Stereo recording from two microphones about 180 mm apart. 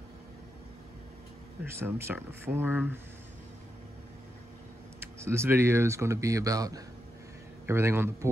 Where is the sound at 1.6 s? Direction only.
15° right (ahead or behind).